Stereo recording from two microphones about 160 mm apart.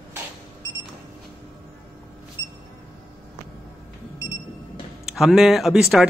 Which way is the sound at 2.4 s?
30° left (ahead or behind).